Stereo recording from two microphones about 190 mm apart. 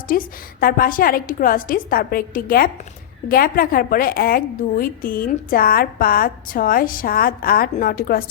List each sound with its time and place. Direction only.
0.1 s a woman's voice: 50° left (ahead or behind)